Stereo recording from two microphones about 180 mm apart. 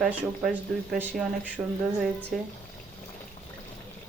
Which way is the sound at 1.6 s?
20° right (ahead or behind).